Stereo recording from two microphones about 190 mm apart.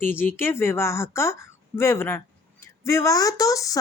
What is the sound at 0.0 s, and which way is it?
A woman's voice, 10° left (ahead or behind).